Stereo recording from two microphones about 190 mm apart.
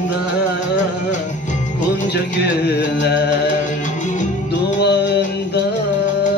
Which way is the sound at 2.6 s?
65° left (ahead or behind).